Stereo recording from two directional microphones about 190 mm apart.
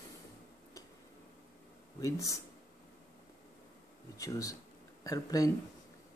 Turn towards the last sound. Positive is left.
turn(degrees=20)  # may be behind; listen again after turning